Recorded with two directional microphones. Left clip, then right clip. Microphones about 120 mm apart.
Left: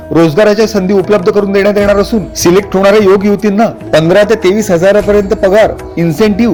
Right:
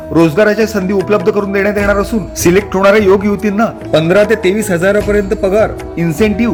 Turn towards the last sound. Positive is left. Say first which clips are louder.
# left 3 dB
turn(degrees=25)  # may be behind; listen again after turning